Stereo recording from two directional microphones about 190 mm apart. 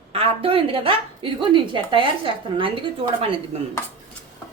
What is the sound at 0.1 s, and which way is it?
A woman's voice, 30° right (ahead or behind).